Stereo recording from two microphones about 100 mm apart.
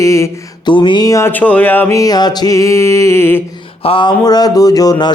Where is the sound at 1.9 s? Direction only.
40° left (ahead or behind).